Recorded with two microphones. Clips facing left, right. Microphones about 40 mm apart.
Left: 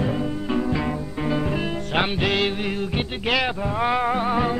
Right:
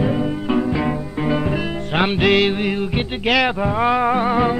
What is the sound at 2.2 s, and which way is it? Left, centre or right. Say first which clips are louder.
Music: right 6 dB; right.